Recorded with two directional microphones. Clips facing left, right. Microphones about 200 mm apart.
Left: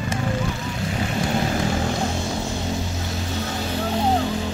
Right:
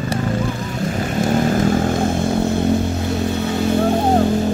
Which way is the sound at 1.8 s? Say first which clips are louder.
Right 7 dB; 55° right (ahead or behind).